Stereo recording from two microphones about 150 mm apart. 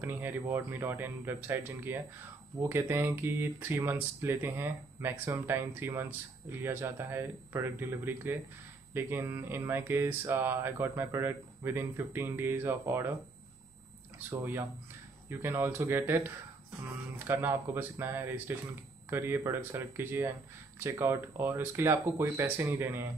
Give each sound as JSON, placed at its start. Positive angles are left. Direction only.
{"t": 0.0, "sound": "speech", "side_deg": -15}
{"t": 14.3, "sound": "speech", "side_deg": -15}
{"t": 17.3, "sound": "speech", "side_deg": -15}